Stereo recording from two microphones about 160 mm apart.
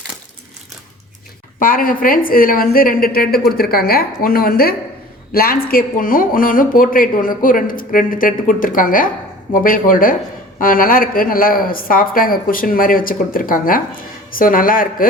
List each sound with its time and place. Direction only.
1.5 s a woman's voice: 60° left (ahead or behind)